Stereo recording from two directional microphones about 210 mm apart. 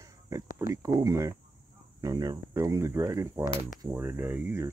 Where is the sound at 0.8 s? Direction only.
15° right (ahead or behind).